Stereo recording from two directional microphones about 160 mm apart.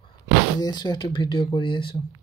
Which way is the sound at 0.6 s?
25° left (ahead or behind).